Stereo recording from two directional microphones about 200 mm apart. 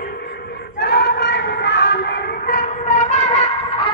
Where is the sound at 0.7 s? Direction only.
55° left (ahead or behind).